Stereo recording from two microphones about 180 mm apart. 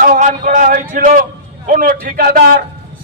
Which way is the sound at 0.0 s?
45° right (ahead or behind).